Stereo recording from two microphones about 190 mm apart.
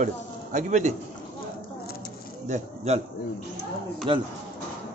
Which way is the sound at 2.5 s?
35° right (ahead or behind).